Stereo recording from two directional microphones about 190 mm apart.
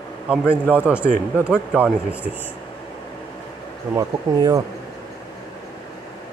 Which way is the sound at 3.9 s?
15° right (ahead or behind).